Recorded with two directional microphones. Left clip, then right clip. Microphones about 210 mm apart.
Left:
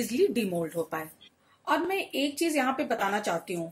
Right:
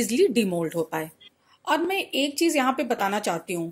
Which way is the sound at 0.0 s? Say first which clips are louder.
Right 5 dB; 40° right (ahead or behind).